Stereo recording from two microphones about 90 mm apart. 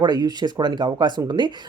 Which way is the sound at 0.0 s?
50° right (ahead or behind).